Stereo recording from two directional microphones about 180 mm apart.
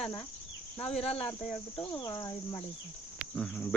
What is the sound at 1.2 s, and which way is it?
Speech, 10° left (ahead or behind).